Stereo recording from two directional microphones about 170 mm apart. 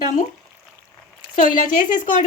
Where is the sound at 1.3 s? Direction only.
50° left (ahead or behind).